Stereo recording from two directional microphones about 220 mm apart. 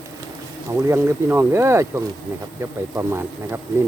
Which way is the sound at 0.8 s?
10° right (ahead or behind).